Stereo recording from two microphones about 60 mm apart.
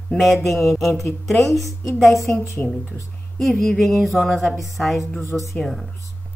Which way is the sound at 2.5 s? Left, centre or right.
Left.